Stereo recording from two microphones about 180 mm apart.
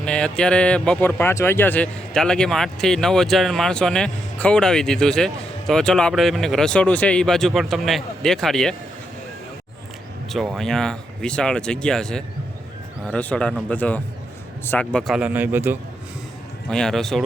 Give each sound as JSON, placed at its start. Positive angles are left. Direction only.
{"t": 0.0, "sound": "speech", "side_deg": 5}
{"t": 10.2, "sound": "a man's voice", "side_deg": 0}
{"t": 16.6, "sound": "speech", "side_deg": 5}